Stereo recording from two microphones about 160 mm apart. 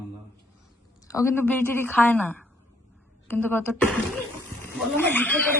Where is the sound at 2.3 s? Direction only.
10° left (ahead or behind).